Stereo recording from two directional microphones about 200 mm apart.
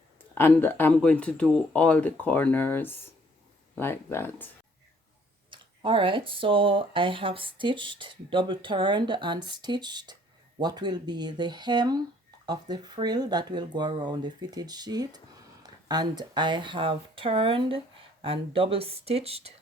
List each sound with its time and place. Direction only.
0.3 s speech: 10° left (ahead or behind)
5.5 s speech: 25° right (ahead or behind)